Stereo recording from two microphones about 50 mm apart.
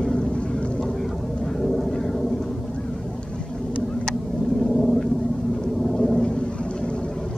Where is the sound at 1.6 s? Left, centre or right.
Centre.